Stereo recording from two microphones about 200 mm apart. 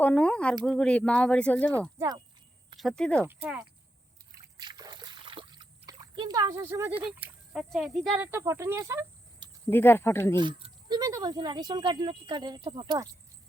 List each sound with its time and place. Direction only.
0.0 s speech: 5° left (ahead or behind)
2.0 s speech: 20° right (ahead or behind)
2.7 s speech: centre (ahead or behind)
3.2 s speech: 10° right (ahead or behind)
4.5 s splash: 20° right (ahead or behind); by 8.3 s 5° right (ahead or behind)
8.3 s speech: 15° right (ahead or behind)
9.6 s speech: 10° left (ahead or behind)
10.3 s speech: 25° right (ahead or behind)